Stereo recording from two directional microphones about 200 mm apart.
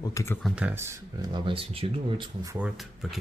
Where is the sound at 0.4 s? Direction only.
5° right (ahead or behind).